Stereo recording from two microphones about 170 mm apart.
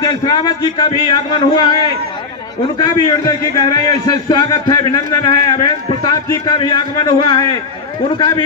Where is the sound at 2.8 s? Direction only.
25° left (ahead or behind).